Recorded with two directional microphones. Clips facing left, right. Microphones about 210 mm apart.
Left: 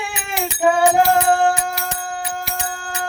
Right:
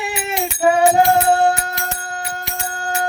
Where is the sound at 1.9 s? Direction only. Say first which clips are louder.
Left 1 dB; 20° left (ahead or behind).